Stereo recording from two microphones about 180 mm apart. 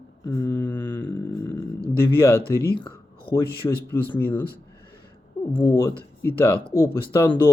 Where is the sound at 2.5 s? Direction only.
15° left (ahead or behind).